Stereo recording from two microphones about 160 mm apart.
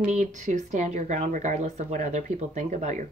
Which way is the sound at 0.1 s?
50° right (ahead or behind).